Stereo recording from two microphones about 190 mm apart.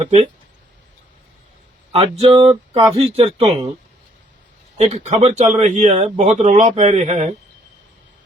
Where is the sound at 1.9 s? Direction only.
30° right (ahead or behind).